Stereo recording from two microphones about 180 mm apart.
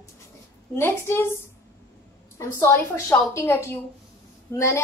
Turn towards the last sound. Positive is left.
turn(degrees=15)  # may be behind; listen again after turning